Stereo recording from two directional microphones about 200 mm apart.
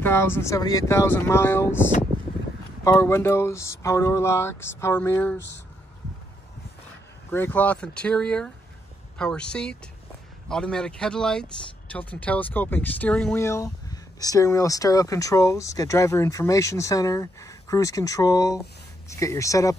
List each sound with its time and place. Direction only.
0.0 s speech: 10° left (ahead or behind)
7.2 s speech: 10° left (ahead or behind)